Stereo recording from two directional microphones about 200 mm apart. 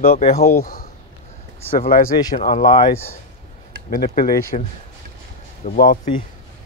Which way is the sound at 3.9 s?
45° left (ahead or behind).